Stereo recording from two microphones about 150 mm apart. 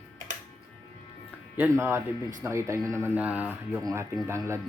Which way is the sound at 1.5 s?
15° right (ahead or behind).